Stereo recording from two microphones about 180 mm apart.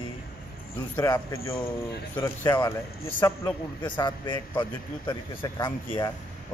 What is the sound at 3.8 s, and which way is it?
A man's voice, 25° left (ahead or behind).